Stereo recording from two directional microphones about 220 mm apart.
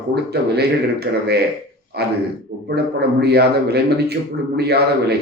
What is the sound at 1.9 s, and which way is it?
A man's voice, 50° right (ahead or behind).